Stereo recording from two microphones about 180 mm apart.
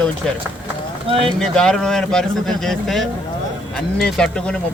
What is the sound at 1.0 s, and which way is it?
Speech, 30° right (ahead or behind).